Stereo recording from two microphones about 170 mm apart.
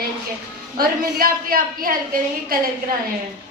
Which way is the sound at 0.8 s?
60° right (ahead or behind).